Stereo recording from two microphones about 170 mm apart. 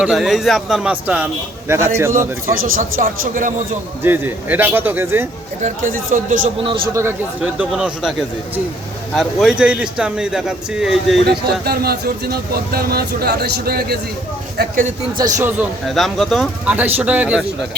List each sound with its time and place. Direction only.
0.0 s a man's voice: centre (ahead or behind)
2.5 s speech: 55° right (ahead or behind)
4.0 s a man's voice: 10° right (ahead or behind)
5.6 s speech: 50° right (ahead or behind)
6.6 s a man's voice: 30° right (ahead or behind)
6.9 s a man's voice: 10° right (ahead or behind)
9.1 s speech: centre (ahead or behind)
11.3 s speech: 65° right (ahead or behind)
15.2 s a man's voice: 15° right (ahead or behind)
15.9 s a man's voice: centre (ahead or behind)